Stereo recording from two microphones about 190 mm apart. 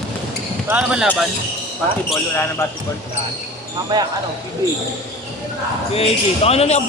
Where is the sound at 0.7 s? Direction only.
5° right (ahead or behind).